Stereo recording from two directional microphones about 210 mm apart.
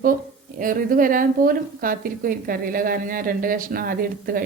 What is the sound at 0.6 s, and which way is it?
A woman's voice, 40° right (ahead or behind).